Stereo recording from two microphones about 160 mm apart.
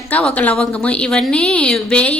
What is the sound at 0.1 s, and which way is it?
A woman's voice, 10° left (ahead or behind).